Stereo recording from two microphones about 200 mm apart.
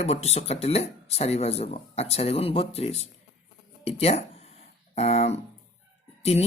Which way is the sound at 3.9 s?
30° left (ahead or behind).